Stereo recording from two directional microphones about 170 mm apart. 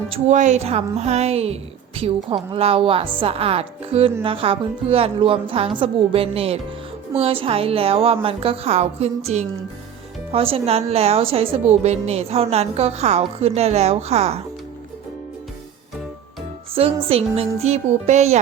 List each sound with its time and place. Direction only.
0.1 s a woman's voice: 45° right (ahead or behind)
16.7 s a woman's voice: 35° right (ahead or behind)